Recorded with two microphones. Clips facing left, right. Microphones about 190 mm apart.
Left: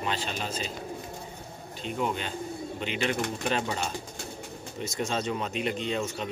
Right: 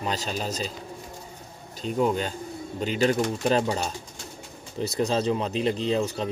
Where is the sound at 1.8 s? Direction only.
40° right (ahead or behind).